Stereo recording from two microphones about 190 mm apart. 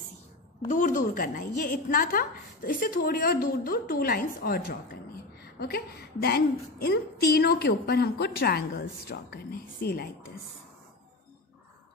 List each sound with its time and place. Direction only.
0.7 s a woman's voice: 45° left (ahead or behind)